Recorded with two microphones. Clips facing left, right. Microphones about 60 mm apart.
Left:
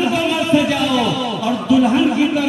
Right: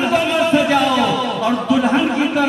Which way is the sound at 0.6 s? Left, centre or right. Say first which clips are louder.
Right 1 dB; right.